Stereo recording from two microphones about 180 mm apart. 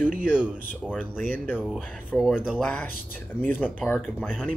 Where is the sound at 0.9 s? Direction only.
10° left (ahead or behind).